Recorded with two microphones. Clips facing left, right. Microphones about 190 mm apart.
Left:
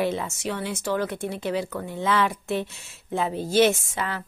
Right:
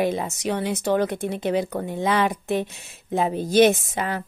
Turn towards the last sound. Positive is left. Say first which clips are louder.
# right 3 dB
turn(degrees=-20)  # may be behind; listen again after turning